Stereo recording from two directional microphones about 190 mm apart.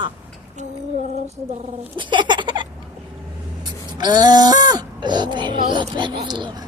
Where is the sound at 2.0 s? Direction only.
25° right (ahead or behind).